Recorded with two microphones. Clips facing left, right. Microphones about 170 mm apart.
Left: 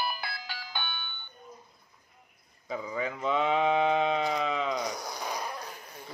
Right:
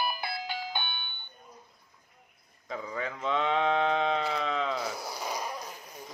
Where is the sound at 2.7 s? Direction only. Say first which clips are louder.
Left 2 dB; 5° left (ahead or behind).